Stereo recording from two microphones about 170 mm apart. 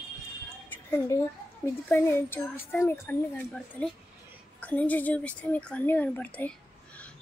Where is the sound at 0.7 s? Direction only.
15° left (ahead or behind).